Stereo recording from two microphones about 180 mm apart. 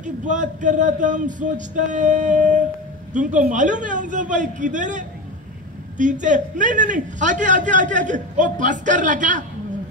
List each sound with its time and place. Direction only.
0.0 s a man's voice: 45° right (ahead or behind)